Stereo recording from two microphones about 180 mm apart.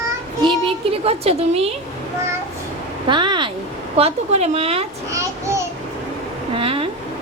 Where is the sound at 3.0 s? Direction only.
25° right (ahead or behind).